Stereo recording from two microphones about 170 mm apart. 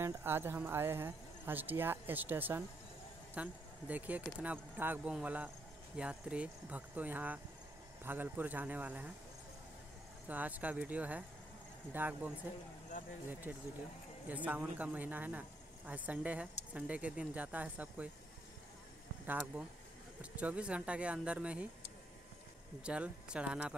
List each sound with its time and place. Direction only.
0.0 s speech: 15° right (ahead or behind)
10.2 s speech: 10° right (ahead or behind)
13.3 s speech: 10° right (ahead or behind)
19.2 s speech: 10° right (ahead or behind)
22.8 s speech: 5° right (ahead or behind)